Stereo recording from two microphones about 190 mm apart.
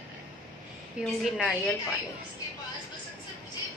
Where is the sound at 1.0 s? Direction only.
5° right (ahead or behind).